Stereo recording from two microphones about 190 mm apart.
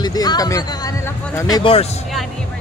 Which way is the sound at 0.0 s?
20° left (ahead or behind).